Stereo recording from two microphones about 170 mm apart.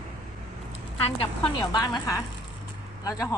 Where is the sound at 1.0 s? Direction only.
30° left (ahead or behind).